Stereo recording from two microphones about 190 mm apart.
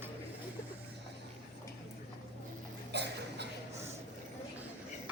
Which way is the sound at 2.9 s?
60° right (ahead or behind).